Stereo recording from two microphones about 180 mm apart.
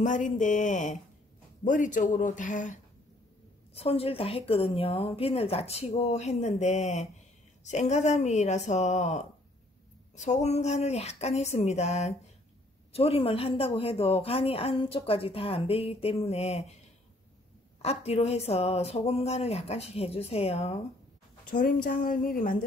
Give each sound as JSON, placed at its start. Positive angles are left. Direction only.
{"t": 0.0, "sound": "a woman's voice", "side_deg": 45}
{"t": 3.7, "sound": "speech", "side_deg": 35}
{"t": 17.8, "sound": "speech", "side_deg": 35}
{"t": 21.5, "sound": "a woman's voice", "side_deg": 50}